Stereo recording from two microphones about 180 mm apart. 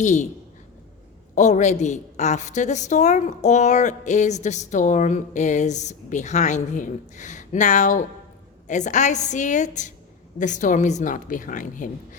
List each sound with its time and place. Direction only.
0.0 s a woman's voice: 40° left (ahead or behind)
1.4 s a woman's voice: 40° left (ahead or behind)